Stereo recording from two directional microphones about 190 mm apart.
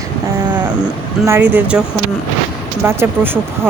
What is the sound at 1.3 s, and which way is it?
Speech, 10° right (ahead or behind).